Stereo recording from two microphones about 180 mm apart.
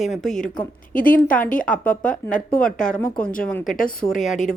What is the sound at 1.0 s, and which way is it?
Speech, 50° left (ahead or behind).